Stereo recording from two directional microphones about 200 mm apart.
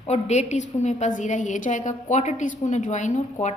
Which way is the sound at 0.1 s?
35° left (ahead or behind).